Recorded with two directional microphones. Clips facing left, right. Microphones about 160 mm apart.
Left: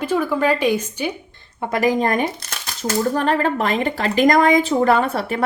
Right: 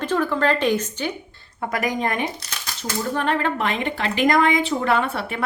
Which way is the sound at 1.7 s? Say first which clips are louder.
Left 6 dB; 30° left (ahead or behind).